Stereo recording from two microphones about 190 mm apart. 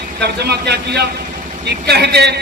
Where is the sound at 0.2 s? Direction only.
60° right (ahead or behind).